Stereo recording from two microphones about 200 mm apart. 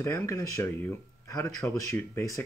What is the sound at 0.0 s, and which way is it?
Speech, 15° left (ahead or behind).